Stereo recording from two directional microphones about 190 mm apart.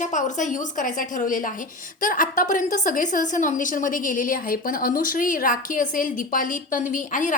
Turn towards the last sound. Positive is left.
turn(degrees=40)  # may be behind; listen again after turning